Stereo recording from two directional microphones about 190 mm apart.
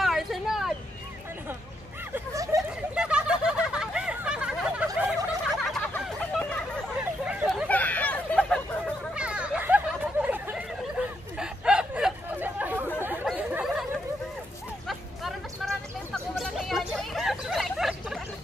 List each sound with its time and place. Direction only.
0.0 s vehicle: centre (ahead or behind)
2.1 s a sound: 15° right (ahead or behind)
2.9 s snicker: 5° right (ahead or behind)
7.2 s hubbub: 5° right (ahead or behind)
9.1 s a sound: 5° right (ahead or behind)
14.9 s hubbub: centre (ahead or behind)